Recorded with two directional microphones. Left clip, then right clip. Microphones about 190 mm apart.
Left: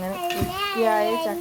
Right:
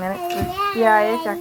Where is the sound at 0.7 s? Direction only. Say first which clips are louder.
Right 5 dB; 15° right (ahead or behind).